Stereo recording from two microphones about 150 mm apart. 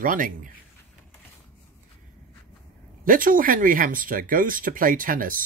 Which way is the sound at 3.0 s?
65° right (ahead or behind).